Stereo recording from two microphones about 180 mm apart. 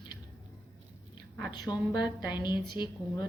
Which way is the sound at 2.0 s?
10° right (ahead or behind).